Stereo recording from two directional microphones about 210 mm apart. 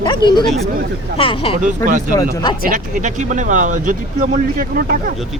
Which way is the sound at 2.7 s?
35° right (ahead or behind).